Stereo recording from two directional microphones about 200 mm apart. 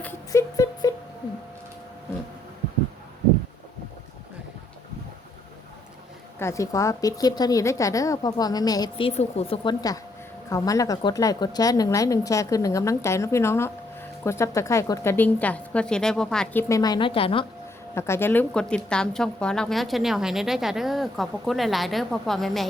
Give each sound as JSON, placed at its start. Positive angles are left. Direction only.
{"t": 0.0, "sound": "music", "side_deg": 10}
{"t": 6.4, "sound": "a woman's voice", "side_deg": 15}
{"t": 17.9, "sound": "a woman's voice", "side_deg": 15}